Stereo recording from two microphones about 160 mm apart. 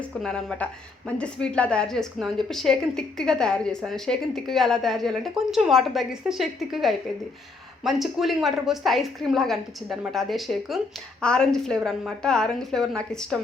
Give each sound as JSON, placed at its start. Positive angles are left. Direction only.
{"t": 0.0, "sound": "speech", "side_deg": 5}